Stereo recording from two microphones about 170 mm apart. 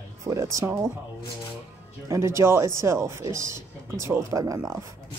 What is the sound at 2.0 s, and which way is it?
Speech, 15° right (ahead or behind).